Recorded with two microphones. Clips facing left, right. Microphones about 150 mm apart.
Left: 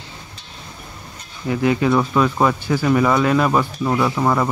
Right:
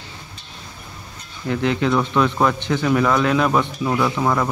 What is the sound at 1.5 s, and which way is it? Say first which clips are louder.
Speech: left 2 dB; 5° left (ahead or behind).